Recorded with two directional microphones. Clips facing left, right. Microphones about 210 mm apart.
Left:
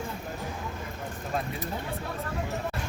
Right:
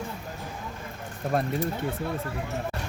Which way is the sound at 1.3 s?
55° right (ahead or behind).